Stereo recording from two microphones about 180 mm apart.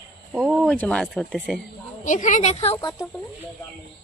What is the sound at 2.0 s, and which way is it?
Speech, 45° left (ahead or behind).